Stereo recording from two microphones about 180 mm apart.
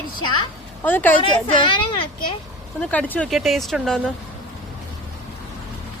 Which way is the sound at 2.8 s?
5° left (ahead or behind).